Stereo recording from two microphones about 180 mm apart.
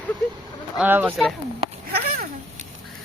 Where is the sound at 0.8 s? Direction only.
10° right (ahead or behind).